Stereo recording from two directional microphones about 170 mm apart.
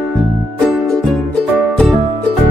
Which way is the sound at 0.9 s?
5° left (ahead or behind).